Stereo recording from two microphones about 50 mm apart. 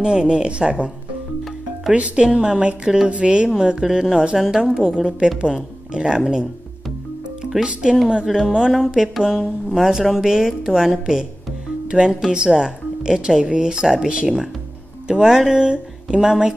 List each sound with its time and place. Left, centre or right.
0.0 s speech: centre
2.0 s a woman's voice: right
2.2 s a woman's voice: centre
7.4 s speech: centre
15.5 s speech: centre